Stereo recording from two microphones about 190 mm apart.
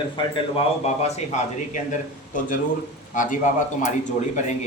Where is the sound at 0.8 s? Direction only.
40° left (ahead or behind).